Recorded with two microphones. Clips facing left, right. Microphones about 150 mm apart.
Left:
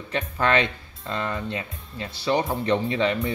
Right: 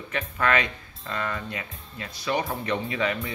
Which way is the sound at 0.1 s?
30° left (ahead or behind).